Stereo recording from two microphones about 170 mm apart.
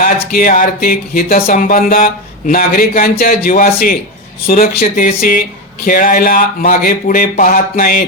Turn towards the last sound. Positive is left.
turn(degrees=60)  # may be behind; listen again after turning